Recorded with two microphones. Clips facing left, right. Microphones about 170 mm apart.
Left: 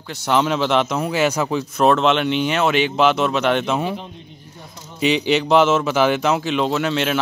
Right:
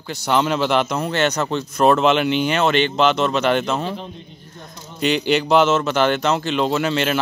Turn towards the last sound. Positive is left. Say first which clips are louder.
# even
turn(degrees=0)  # may be behind; listen again after turning